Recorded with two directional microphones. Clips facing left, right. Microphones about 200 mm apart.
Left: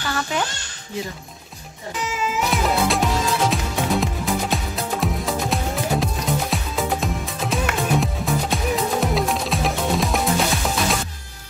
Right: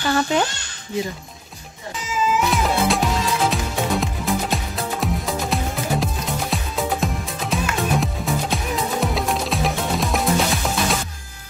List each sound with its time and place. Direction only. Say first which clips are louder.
0.1 s a child's voice: right 5 dB; 30° right (ahead or behind)
2.5 s music: even; centre (ahead or behind)